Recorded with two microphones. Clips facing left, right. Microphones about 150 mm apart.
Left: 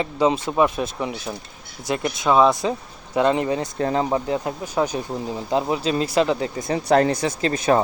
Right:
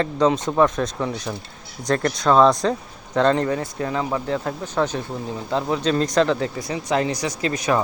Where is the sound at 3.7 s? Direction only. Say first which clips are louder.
Left 3 dB; 35° left (ahead or behind).